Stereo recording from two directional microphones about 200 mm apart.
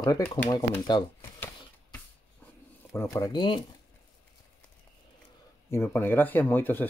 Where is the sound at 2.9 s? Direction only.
15° left (ahead or behind).